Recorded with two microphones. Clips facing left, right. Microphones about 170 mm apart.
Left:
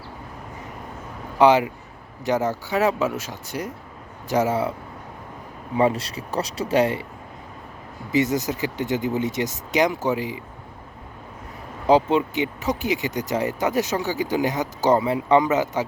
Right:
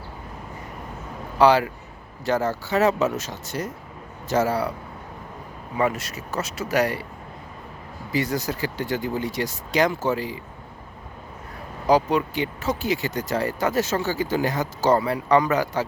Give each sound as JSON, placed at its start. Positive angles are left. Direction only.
{"t": 1.4, "sound": "speech", "side_deg": 20}
{"t": 5.7, "sound": "speech", "side_deg": 30}
{"t": 8.1, "sound": "speech", "side_deg": 20}
{"t": 11.9, "sound": "speech", "side_deg": 25}